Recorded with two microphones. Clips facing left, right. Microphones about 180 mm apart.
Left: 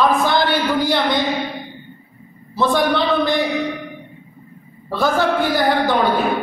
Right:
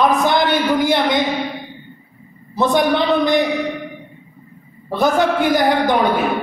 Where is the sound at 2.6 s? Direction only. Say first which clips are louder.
Right 1 dB; 20° right (ahead or behind).